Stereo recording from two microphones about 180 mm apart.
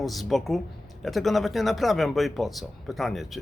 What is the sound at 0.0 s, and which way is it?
Speech, centre (ahead or behind).